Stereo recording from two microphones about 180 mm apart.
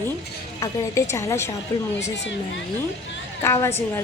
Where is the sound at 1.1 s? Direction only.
15° left (ahead or behind).